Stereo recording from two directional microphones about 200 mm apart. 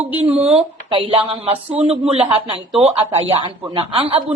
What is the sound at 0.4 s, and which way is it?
Speech, 30° right (ahead or behind).